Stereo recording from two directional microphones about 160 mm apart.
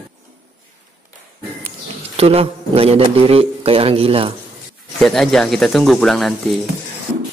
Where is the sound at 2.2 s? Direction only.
40° right (ahead or behind).